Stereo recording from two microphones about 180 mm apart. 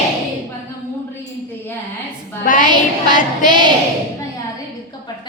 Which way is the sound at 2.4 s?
50° left (ahead or behind).